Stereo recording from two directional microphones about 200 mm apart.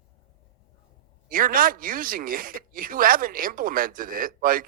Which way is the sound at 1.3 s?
45° right (ahead or behind).